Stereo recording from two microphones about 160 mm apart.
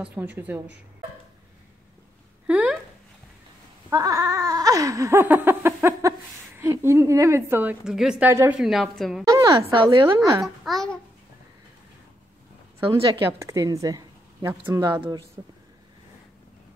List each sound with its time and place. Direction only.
0.0 s speech: 10° right (ahead or behind)
2.4 s a sound: 10° right (ahead or behind)
3.9 s a sound: 20° right (ahead or behind); by 8.3 s 5° right (ahead or behind)
8.3 s speech: 15° right (ahead or behind)
8.5 s a woman's voice: centre (ahead or behind)
9.3 s a woman's voice: 30° right (ahead or behind)
10.4 s a woman's voice: centre (ahead or behind)
13.2 s speech: 15° right (ahead or behind)